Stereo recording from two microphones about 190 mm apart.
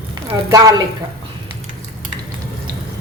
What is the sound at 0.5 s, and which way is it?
Speech, 20° right (ahead or behind).